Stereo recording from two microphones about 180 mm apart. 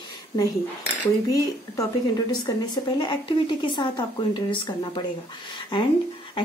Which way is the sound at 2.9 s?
25° left (ahead or behind).